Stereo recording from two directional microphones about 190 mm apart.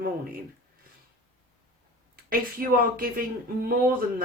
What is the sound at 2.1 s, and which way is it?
Speech, 50° right (ahead or behind).